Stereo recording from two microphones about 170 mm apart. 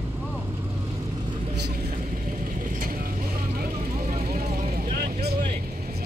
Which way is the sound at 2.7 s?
55° right (ahead or behind).